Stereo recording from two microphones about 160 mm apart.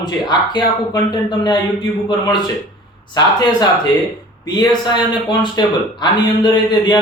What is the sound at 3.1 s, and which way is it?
Speech, 25° left (ahead or behind).